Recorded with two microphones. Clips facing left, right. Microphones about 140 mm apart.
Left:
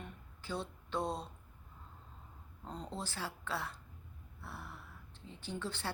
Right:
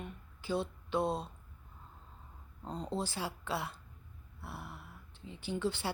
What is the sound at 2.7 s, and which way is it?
Speech, 15° right (ahead or behind).